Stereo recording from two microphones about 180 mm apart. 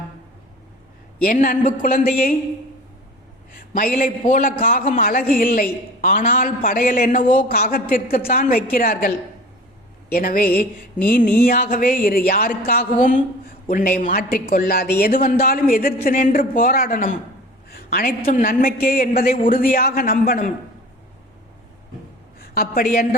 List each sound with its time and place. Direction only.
1.2 s speech: 50° left (ahead or behind)
3.6 s a woman's voice: 50° left (ahead or behind)
17.7 s a sound: 55° left (ahead or behind)
18.3 s speech: 50° left (ahead or behind)
22.4 s a woman's voice: 55° left (ahead or behind)